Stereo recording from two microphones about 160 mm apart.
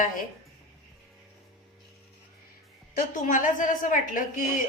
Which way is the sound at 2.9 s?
55° left (ahead or behind).